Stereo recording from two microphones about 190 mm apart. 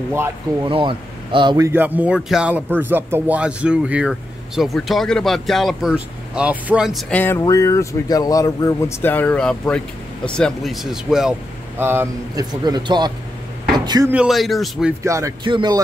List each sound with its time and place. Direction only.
0.7 s a man's voice: 25° right (ahead or behind)
1.7 s a man's voice: 10° right (ahead or behind)
14.1 s speech: centre (ahead or behind)
15.0 s a man's voice: 15° right (ahead or behind)